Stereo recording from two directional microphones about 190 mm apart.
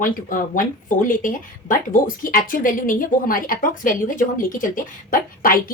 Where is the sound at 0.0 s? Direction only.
45° left (ahead or behind).